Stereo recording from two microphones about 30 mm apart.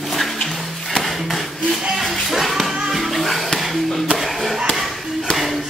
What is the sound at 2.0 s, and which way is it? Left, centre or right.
Music, centre.